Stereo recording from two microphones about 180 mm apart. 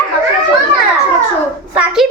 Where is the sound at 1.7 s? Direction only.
5° right (ahead or behind).